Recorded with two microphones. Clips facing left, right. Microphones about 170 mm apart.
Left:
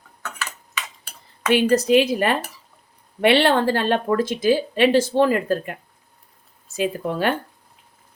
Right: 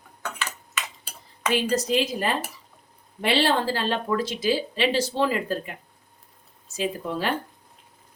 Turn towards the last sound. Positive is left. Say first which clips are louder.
# left 5 dB
turn(degrees=60)  # may be behind; listen again after turning